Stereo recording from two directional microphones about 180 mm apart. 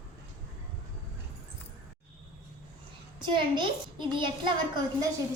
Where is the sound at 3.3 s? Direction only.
25° right (ahead or behind).